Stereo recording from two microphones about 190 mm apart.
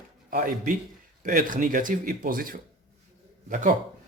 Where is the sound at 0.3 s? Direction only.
45° right (ahead or behind).